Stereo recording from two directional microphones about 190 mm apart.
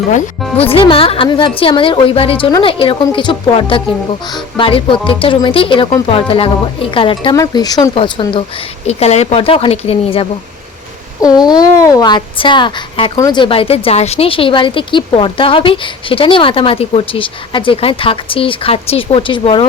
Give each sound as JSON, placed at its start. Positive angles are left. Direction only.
{"t": 0.1, "sound": "a woman's voice", "side_deg": 30}
{"t": 8.9, "sound": "a woman's voice", "side_deg": 35}